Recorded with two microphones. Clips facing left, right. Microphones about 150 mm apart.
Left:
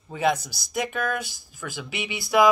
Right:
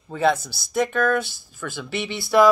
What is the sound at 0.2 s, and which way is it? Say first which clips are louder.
Speech: right 3 dB; 15° left (ahead or behind).